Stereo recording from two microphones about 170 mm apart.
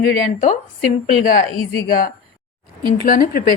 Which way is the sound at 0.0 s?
50° left (ahead or behind).